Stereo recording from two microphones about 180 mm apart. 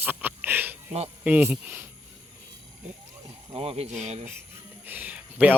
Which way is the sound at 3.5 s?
35° right (ahead or behind).